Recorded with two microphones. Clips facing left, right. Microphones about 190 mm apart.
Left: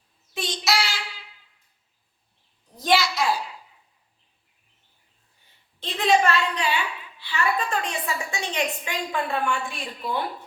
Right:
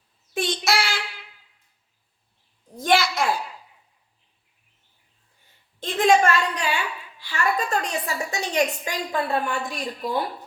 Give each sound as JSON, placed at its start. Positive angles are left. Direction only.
{"t": 0.3, "sound": "child singing", "side_deg": -55}
{"t": 2.7, "sound": "a sound", "side_deg": -50}
{"t": 5.8, "sound": "a woman's voice", "side_deg": -45}